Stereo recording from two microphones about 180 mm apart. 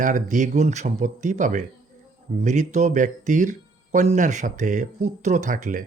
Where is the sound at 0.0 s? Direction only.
45° right (ahead or behind).